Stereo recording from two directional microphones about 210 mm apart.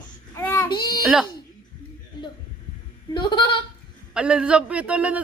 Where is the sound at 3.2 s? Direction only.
20° left (ahead or behind).